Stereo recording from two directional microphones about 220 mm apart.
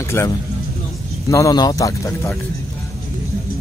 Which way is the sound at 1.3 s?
15° left (ahead or behind).